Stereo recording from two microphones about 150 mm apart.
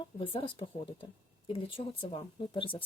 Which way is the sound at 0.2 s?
35° left (ahead or behind).